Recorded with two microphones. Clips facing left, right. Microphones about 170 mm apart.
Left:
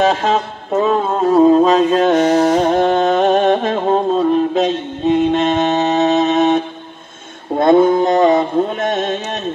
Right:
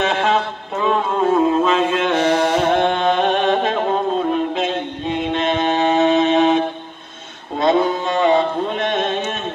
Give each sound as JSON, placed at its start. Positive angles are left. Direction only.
{"t": 0.0, "sound": "music", "side_deg": 35}
{"t": 4.6, "sound": "mantra", "side_deg": 40}
{"t": 7.5, "sound": "a sound", "side_deg": 50}